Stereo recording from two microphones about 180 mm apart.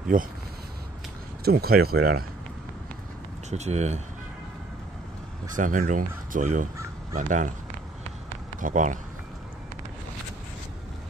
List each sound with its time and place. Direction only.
0.1 s speech: 50° right (ahead or behind)
1.4 s speech: 60° right (ahead or behind)
3.4 s speech: 40° right (ahead or behind)
5.6 s speech: 45° right (ahead or behind)
8.5 s speech: 45° right (ahead or behind)